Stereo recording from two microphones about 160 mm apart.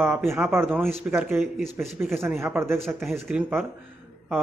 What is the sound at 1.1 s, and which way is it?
Speech, centre (ahead or behind).